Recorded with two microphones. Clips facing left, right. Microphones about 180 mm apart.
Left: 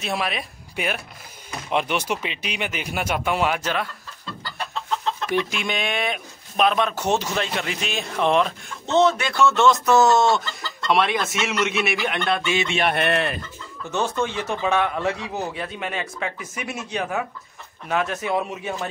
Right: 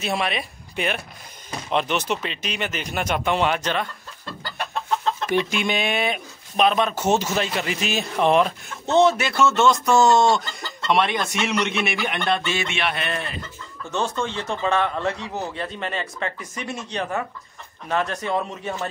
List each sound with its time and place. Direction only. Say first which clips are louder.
0.0 s speech: right 1 dB; centre (ahead or behind)
5.2 s speech: right 2 dB; centre (ahead or behind)
12.6 s speech: left 4 dB; 40° left (ahead or behind)
12.9 s speech: left 6 dB; 65° left (ahead or behind)
13.9 s speech: left 1 dB; 5° left (ahead or behind)